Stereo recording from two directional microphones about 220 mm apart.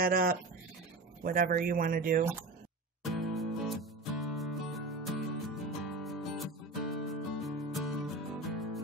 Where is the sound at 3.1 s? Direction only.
Centre (ahead or behind).